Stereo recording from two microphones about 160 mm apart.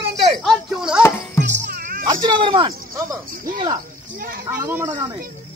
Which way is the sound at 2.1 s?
30° right (ahead or behind).